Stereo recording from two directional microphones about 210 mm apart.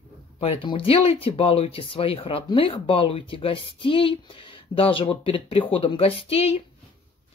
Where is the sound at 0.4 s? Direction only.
25° left (ahead or behind).